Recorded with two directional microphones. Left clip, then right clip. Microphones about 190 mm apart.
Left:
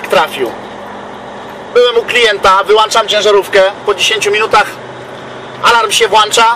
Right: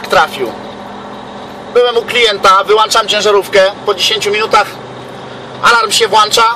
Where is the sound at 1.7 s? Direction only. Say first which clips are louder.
Left 1 dB; 20° right (ahead or behind).